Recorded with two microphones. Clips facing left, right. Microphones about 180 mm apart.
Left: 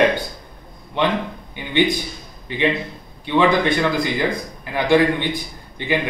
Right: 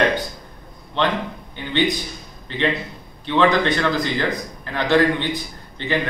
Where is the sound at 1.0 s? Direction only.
10° left (ahead or behind).